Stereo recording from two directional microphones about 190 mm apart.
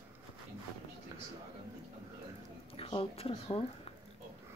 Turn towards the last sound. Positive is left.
turn(degrees=30)  # may be behind; listen again after turning